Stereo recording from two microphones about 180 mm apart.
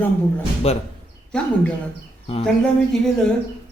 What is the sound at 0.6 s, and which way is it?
Speech, 35° left (ahead or behind).